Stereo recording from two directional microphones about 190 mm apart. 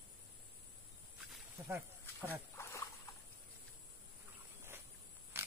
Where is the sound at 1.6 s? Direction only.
15° right (ahead or behind).